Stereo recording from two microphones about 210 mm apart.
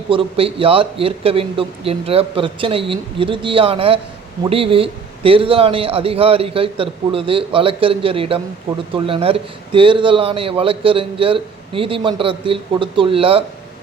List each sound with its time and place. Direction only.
0.1 s speech: 25° right (ahead or behind)